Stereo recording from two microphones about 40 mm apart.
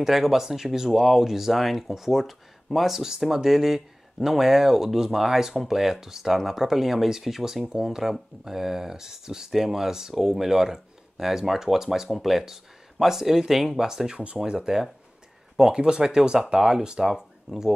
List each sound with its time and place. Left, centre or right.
0.0 s speech: centre; by 14.7 s right
15.7 s speech: centre